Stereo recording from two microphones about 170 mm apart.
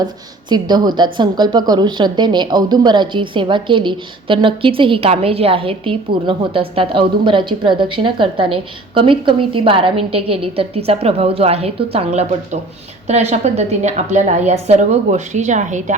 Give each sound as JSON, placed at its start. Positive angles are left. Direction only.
{"t": 0.0, "sound": "a woman's voice", "side_deg": -25}